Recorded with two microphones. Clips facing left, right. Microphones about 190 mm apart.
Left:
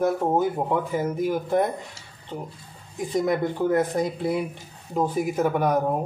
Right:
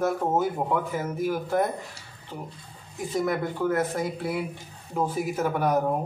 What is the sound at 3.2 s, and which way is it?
Speech, 20° left (ahead or behind).